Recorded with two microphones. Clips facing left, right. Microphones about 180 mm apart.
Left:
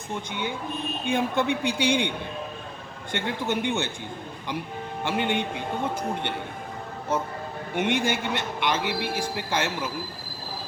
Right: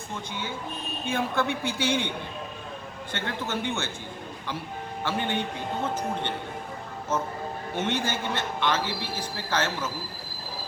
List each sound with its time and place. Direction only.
0.1 s a man's voice: 15° left (ahead or behind)
5.0 s a man's voice: 15° left (ahead or behind)
7.8 s a man's voice: 15° left (ahead or behind)